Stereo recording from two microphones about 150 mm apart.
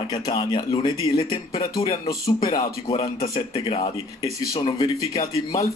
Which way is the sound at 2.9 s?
40° left (ahead or behind).